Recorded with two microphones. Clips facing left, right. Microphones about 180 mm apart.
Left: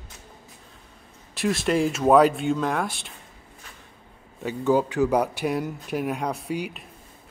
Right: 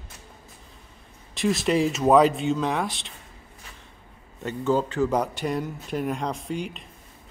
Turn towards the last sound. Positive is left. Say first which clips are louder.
# left 1 dB
turn(degrees=5)  # may be behind; listen again after turning